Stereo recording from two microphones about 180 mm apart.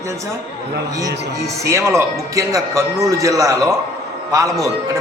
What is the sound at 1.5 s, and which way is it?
A man's voice, 15° right (ahead or behind).